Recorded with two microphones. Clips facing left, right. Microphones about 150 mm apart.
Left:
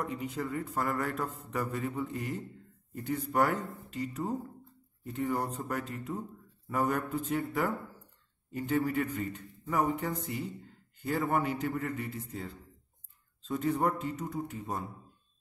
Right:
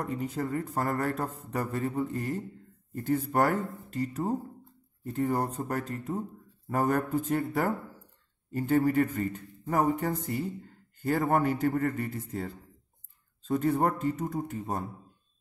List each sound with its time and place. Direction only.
0.0 s speech: 45° right (ahead or behind)